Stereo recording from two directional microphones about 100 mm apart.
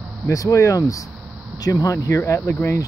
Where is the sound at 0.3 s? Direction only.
35° left (ahead or behind).